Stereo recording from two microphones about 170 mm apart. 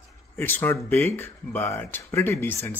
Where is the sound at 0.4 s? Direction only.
10° left (ahead or behind).